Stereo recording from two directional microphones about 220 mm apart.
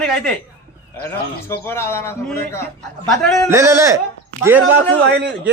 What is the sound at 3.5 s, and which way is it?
Speech, 15° right (ahead or behind).